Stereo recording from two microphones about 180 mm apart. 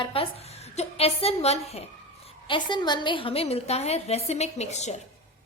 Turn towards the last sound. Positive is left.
turn(degrees=40)  # may be behind; listen again after turning